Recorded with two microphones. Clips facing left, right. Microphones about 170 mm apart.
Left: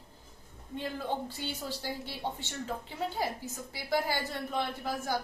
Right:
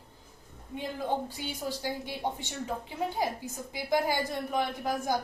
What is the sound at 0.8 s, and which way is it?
A woman's voice, 15° right (ahead or behind).